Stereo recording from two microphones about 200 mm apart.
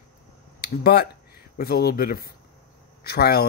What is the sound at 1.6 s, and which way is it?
Speech, 50° left (ahead or behind).